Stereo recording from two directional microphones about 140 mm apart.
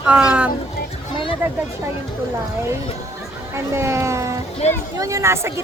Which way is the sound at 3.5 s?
20° right (ahead or behind).